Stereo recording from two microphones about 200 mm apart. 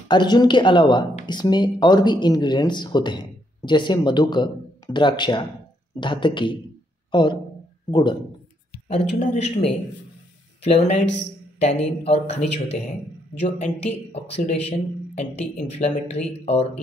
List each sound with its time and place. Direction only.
0.1 s a man's voice: 20° left (ahead or behind)
8.8 s a man's voice: 35° left (ahead or behind)
10.6 s a man's voice: 35° left (ahead or behind)
13.4 s a man's voice: 30° left (ahead or behind)